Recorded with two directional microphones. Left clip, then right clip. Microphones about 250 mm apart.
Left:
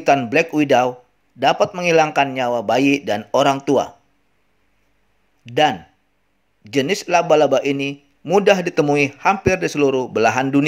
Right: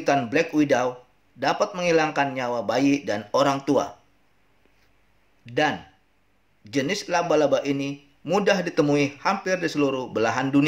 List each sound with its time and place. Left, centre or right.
0.0 s a man's voice: left
5.4 s a man's voice: left